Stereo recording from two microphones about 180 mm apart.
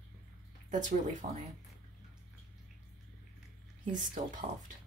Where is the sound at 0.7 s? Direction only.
45° right (ahead or behind).